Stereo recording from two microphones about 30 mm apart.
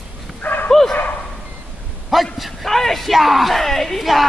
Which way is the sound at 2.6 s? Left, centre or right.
Centre.